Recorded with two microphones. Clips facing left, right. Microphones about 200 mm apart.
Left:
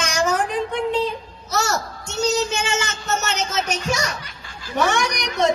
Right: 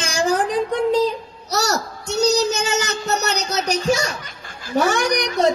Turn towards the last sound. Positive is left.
turn(degrees=-35)  # may be behind; listen again after turning